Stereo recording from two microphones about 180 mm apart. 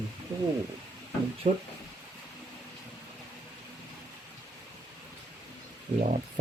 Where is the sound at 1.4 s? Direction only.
40° right (ahead or behind).